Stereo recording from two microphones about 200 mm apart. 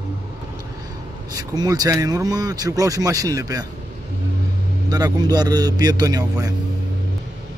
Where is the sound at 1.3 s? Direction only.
20° right (ahead or behind).